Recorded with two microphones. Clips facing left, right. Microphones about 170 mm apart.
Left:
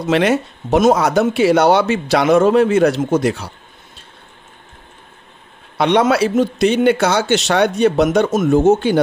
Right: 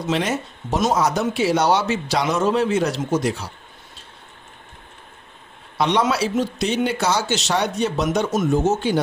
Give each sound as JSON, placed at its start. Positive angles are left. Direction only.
{"t": 0.0, "sound": "speech", "side_deg": 65}
{"t": 5.8, "sound": "speech", "side_deg": 60}